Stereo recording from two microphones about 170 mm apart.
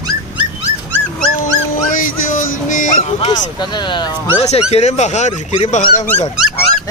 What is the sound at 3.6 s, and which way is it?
Speech, 25° left (ahead or behind).